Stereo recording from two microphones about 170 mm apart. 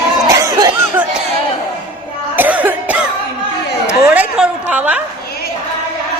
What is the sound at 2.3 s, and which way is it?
Cough, 10° right (ahead or behind).